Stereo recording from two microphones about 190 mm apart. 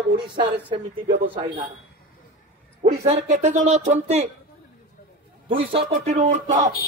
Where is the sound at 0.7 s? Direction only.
25° right (ahead or behind).